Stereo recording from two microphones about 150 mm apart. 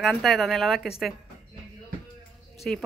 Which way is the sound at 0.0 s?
Centre (ahead or behind).